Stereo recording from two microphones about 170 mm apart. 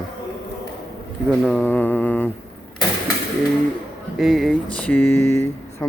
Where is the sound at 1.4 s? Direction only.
5° left (ahead or behind).